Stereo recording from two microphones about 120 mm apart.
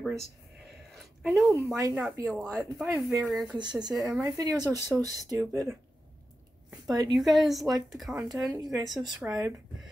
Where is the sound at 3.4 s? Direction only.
40° right (ahead or behind).